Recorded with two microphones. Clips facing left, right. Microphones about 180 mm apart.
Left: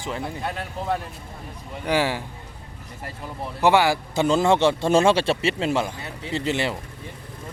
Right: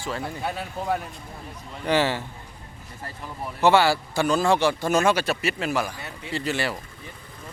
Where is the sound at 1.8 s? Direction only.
10° left (ahead or behind).